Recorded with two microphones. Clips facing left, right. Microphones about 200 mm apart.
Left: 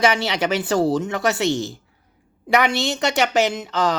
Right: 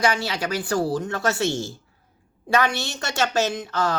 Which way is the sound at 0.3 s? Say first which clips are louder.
Left 4 dB; 20° left (ahead or behind).